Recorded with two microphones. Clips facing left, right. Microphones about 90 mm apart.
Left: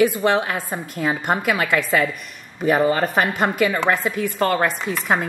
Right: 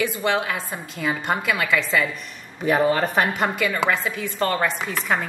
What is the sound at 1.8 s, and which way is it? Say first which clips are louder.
Speech: left 3 dB; 50° left (ahead or behind).